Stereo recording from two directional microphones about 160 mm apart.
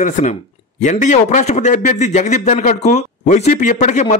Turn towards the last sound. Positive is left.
turn(degrees=50)  # may be behind; listen again after turning